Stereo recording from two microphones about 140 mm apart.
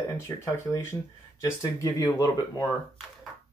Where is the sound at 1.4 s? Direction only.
25° left (ahead or behind).